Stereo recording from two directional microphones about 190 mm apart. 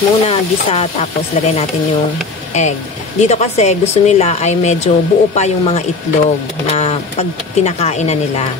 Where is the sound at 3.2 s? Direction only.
35° left (ahead or behind).